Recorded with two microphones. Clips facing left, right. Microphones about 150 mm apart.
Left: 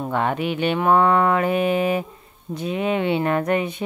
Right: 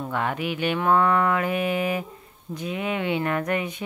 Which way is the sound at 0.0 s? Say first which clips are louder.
Left 4 dB; 30° left (ahead or behind).